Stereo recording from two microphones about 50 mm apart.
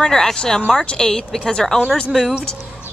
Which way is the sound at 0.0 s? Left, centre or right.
Centre.